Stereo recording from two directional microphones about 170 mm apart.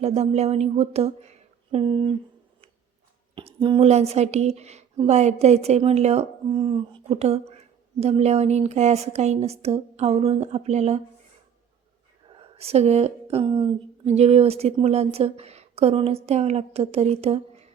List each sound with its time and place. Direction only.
0.0 s a woman's voice: 40° right (ahead or behind)
3.3 s a woman's voice: 30° right (ahead or behind)
12.3 s a woman's voice: 35° right (ahead or behind)